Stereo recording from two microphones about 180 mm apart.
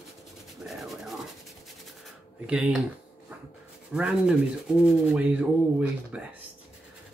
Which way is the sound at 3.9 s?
5° right (ahead or behind).